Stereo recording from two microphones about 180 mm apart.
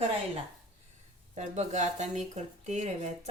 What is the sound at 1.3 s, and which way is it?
Speech, 40° right (ahead or behind).